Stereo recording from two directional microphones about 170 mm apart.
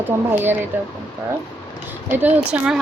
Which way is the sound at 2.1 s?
10° right (ahead or behind).